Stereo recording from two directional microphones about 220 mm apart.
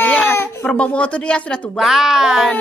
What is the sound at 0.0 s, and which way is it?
Speech, 10° left (ahead or behind).